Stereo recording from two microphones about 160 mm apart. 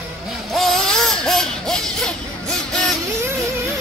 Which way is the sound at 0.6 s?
Centre (ahead or behind).